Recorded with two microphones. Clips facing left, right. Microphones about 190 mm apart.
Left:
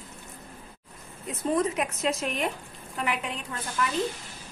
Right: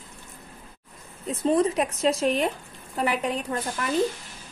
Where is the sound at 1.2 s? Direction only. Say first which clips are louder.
Right 4 dB; 30° right (ahead or behind).